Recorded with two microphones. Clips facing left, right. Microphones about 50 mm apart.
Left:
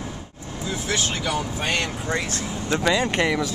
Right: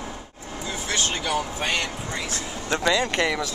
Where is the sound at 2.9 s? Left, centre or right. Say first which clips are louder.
Left 2 dB; centre.